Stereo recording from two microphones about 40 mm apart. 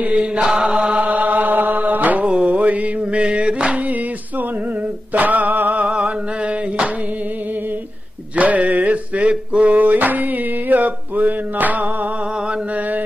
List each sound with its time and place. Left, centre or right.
0.0 s chant: right
0.4 s chant: centre
0.9 s chant: right
2.2 s music: right
5.1 s male singing: right
5.9 s a sound: centre
8.4 s a sound: right